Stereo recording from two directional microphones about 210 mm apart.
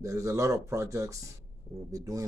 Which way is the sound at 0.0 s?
15° right (ahead or behind).